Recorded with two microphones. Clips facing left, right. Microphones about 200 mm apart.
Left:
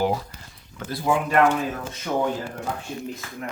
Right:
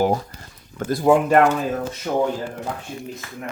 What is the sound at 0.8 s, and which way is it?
Speech, 45° right (ahead or behind).